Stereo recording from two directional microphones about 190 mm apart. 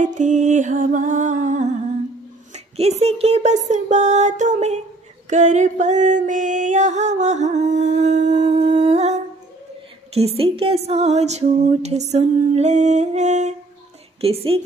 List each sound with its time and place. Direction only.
0.0 s music: 40° right (ahead or behind)